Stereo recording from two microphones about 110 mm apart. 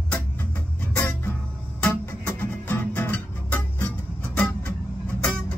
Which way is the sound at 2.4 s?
15° left (ahead or behind).